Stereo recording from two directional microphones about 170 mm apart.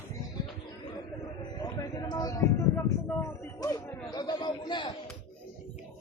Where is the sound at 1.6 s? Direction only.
25° left (ahead or behind).